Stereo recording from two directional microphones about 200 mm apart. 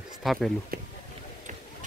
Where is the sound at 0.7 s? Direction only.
50° right (ahead or behind).